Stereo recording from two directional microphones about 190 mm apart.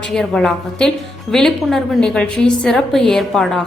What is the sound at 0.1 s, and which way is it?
A woman's voice, centre (ahead or behind).